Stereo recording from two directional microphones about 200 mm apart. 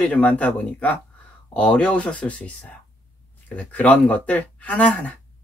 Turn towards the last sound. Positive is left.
turn(degrees=5)  # may be behind; listen again after turning